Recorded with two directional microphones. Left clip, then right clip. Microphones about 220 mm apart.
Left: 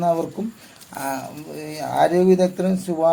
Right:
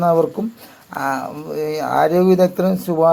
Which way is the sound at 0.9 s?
25° right (ahead or behind).